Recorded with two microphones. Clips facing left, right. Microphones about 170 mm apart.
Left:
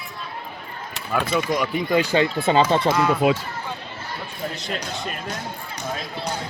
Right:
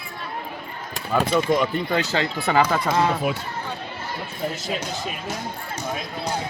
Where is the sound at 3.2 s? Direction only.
90° left.